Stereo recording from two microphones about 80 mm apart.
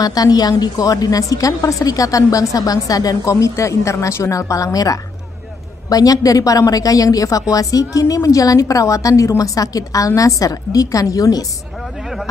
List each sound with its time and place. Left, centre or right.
0.0 s a woman's voice: left